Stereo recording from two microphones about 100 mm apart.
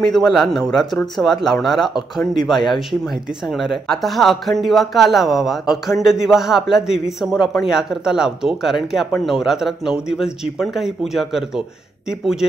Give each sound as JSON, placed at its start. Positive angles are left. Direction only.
{"t": 0.1, "sound": "speech", "side_deg": 0}